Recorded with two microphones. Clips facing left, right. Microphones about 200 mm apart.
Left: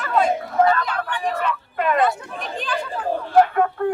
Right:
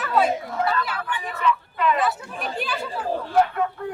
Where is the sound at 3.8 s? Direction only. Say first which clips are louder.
Left 9 dB; 55° left (ahead or behind).